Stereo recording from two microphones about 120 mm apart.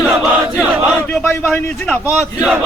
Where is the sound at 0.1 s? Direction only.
15° right (ahead or behind).